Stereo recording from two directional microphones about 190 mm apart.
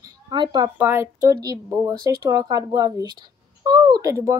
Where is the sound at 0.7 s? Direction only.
10° right (ahead or behind).